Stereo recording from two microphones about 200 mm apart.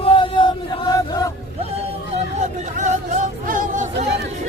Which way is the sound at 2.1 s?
35° right (ahead or behind).